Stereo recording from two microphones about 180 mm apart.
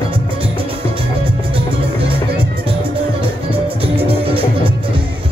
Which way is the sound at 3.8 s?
30° right (ahead or behind).